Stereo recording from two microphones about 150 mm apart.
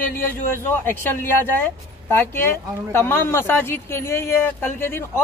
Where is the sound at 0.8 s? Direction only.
15° left (ahead or behind).